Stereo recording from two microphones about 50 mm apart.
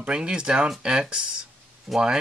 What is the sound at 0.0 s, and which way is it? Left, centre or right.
Speech, centre.